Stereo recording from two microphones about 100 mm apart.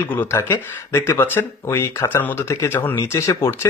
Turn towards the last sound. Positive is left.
turn(degrees=25)  # may be behind; listen again after turning